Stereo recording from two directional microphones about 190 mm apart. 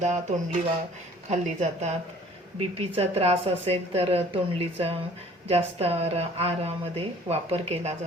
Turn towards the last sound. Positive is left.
turn(degrees=-35)  # may be behind; listen again after turning